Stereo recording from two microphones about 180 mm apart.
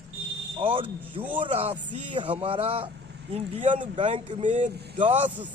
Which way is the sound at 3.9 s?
30° right (ahead or behind).